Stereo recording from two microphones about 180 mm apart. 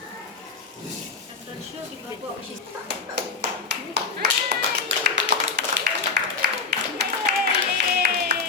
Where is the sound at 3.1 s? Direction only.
70° right (ahead or behind).